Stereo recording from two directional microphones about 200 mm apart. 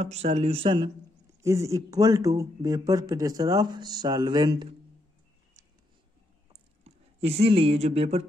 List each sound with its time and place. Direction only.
0.0 s speech: 35° right (ahead or behind)
1.4 s speech: 15° right (ahead or behind)
6.5 s a sound: 30° right (ahead or behind)